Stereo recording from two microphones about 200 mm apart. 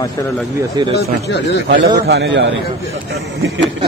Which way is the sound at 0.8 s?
20° right (ahead or behind).